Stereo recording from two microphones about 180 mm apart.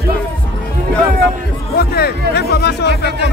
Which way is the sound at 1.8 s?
60° left (ahead or behind).